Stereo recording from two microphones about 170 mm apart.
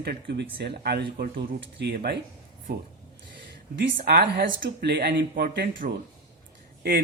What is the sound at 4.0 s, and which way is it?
Speech, 60° right (ahead or behind).